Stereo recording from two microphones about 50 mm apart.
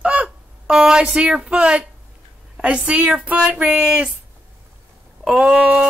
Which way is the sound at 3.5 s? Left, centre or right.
Right.